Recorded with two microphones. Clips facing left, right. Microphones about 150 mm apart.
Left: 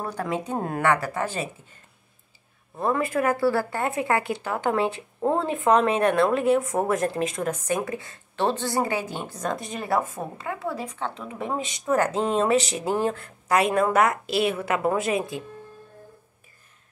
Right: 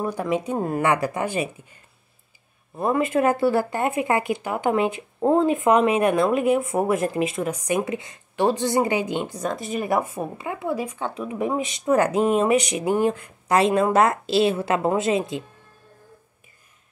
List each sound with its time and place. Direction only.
0.0 s speech: 10° right (ahead or behind)
0.8 s speech: 20° right (ahead or behind)
9.4 s speech: 5° right (ahead or behind)
13.5 s a woman's voice: 25° right (ahead or behind)